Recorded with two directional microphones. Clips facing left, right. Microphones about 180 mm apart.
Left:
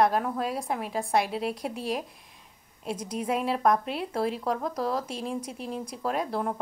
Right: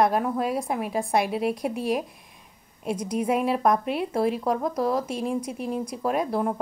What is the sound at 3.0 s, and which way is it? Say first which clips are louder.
A woman's voice: right 4 dB; 15° right (ahead or behind).